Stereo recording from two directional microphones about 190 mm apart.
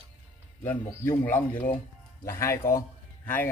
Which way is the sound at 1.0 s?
10° left (ahead or behind).